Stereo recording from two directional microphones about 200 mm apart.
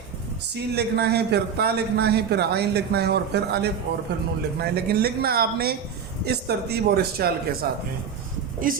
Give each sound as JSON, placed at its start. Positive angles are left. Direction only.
{"t": 0.5, "sound": "a man's voice", "side_deg": -55}